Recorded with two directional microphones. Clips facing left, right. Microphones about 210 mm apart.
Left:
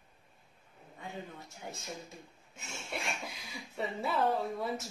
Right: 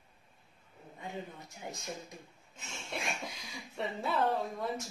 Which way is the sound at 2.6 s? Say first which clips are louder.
Left 1 dB; 10° left (ahead or behind).